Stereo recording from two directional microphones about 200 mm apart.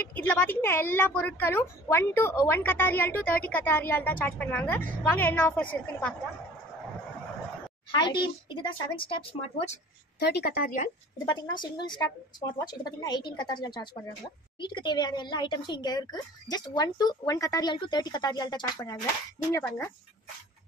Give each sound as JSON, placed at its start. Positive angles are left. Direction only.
{"t": 0.1, "sound": "a woman's voice", "side_deg": 5}
{"t": 7.9, "sound": "speech", "side_deg": 25}
{"t": 10.1, "sound": "a woman's voice", "side_deg": 55}
{"t": 11.2, "sound": "a woman's voice", "side_deg": 20}